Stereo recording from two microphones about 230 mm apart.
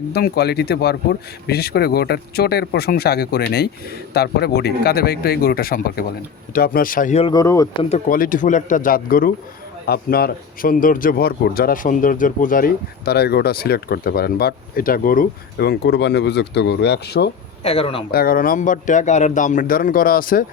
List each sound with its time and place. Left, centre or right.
0.1 s speech: left; by 7.9 s centre
7.9 s speech: left
17.6 s speech: left
18.1 s speech: left